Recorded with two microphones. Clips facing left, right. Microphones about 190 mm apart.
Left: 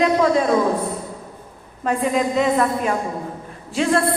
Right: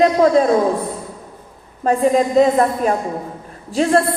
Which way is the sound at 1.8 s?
35° right (ahead or behind).